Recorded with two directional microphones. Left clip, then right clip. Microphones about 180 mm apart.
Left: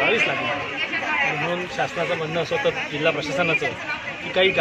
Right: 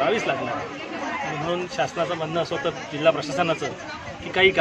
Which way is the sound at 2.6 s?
15° right (ahead or behind).